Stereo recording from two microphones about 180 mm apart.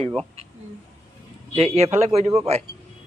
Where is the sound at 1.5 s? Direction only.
35° right (ahead or behind).